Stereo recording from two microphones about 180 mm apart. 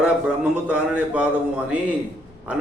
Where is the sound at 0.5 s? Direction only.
5° right (ahead or behind).